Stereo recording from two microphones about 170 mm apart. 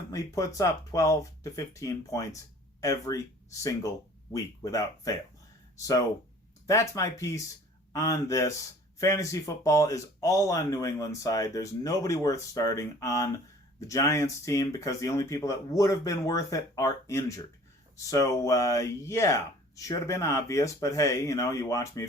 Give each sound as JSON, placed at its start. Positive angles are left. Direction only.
{"t": 0.1, "sound": "speech", "side_deg": 20}